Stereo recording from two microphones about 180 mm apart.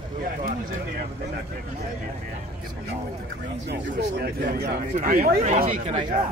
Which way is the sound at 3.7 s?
70° right (ahead or behind).